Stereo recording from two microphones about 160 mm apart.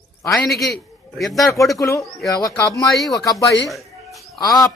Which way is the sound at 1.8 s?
20° left (ahead or behind).